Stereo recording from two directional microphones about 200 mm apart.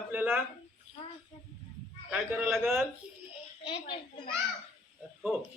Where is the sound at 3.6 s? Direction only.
25° left (ahead or behind).